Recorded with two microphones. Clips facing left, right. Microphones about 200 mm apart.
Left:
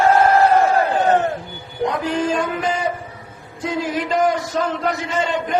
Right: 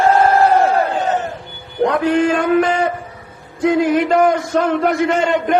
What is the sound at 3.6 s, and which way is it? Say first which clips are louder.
A man's voice: right 8 dB; 60° right (ahead or behind).